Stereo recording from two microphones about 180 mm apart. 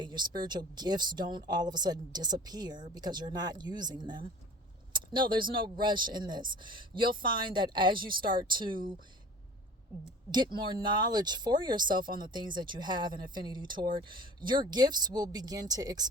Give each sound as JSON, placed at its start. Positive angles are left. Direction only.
{"t": 0.0, "sound": "speech", "side_deg": -25}
{"t": 10.3, "sound": "speech", "side_deg": -25}